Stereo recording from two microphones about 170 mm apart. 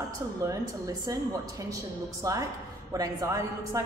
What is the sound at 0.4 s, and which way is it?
Speech, 20° right (ahead or behind).